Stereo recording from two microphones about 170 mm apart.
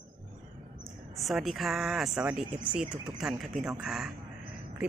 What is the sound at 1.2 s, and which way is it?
Speech, centre (ahead or behind).